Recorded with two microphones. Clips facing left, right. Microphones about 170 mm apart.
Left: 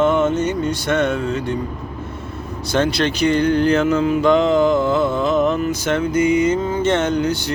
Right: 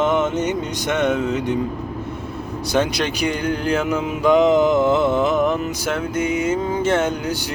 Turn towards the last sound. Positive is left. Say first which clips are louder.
# left 3 dB
turn(degrees=-10)  # may be behind; listen again after turning